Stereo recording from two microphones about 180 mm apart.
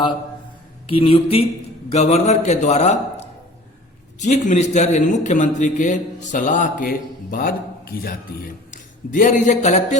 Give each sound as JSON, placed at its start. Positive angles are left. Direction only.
{"t": 0.9, "sound": "a man's voice", "side_deg": 30}
{"t": 4.2, "sound": "a man's voice", "side_deg": 40}